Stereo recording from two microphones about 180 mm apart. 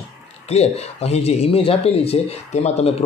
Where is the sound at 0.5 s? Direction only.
35° left (ahead or behind).